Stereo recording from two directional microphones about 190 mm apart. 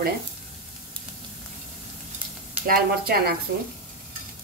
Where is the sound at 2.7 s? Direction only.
55° right (ahead or behind).